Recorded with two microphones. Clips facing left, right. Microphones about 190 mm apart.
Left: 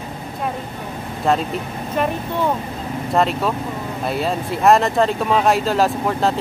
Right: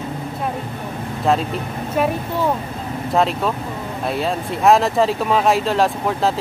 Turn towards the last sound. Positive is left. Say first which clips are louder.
# even
turn(degrees=0)  # may be behind; listen again after turning